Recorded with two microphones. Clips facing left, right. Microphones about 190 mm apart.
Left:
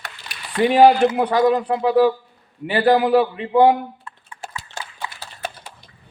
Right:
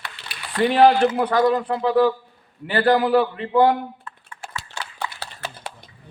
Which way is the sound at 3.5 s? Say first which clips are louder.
Left 3 dB; 15° left (ahead or behind).